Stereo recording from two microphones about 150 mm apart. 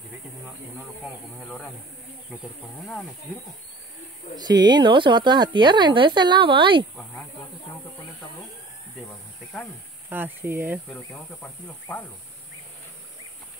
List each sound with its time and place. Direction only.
4.4 s speech: 25° right (ahead or behind)
10.0 s speech: 15° right (ahead or behind)
10.9 s speech: 10° left (ahead or behind)